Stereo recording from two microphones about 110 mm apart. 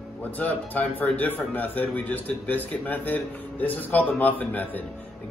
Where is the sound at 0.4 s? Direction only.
15° left (ahead or behind).